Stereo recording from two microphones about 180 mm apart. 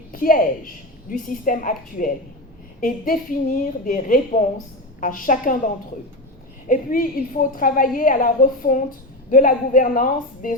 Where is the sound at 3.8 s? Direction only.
50° left (ahead or behind).